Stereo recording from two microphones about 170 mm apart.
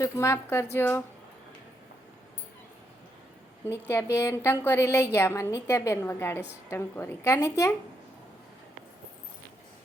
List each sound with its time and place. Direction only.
0.0 s a woman's voice: 15° left (ahead or behind)
3.7 s a woman's voice: 15° left (ahead or behind)